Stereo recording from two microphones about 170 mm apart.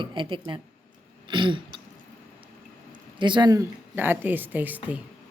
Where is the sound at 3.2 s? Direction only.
25° right (ahead or behind); by 5.0 s 10° right (ahead or behind).